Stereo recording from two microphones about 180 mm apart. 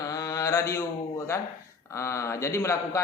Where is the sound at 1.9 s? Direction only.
15° left (ahead or behind).